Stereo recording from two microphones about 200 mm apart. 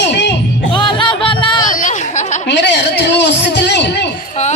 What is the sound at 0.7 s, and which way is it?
Music, 25° left (ahead or behind).